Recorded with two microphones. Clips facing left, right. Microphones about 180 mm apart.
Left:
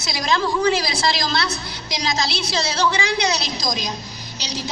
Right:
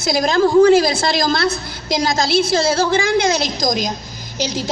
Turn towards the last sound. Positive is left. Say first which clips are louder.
# right 7 dB
turn(degrees=-50)  # may be behind; listen again after turning